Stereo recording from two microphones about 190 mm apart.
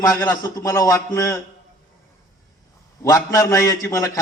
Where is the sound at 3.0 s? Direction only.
15° left (ahead or behind).